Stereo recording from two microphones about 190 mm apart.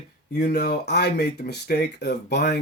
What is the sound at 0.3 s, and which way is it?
Speech, 55° left (ahead or behind).